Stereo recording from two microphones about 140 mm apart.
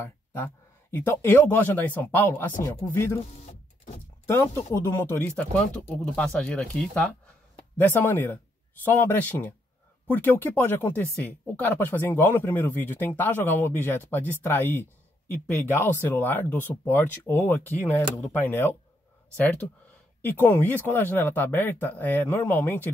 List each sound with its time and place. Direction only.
0.0 s a sound: 15° left (ahead or behind)
0.9 s speech: 15° left (ahead or behind)
2.6 s speech: 25° left (ahead or behind)
4.8 s speech: 15° left (ahead or behind)